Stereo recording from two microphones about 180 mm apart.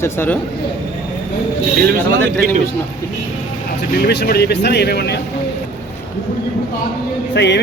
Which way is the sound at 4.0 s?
65° left (ahead or behind).